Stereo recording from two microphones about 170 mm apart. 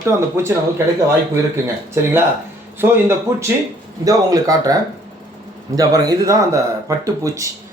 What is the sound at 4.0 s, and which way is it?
A man's voice, 20° right (ahead or behind).